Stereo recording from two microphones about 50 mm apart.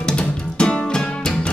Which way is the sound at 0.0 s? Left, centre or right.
Centre.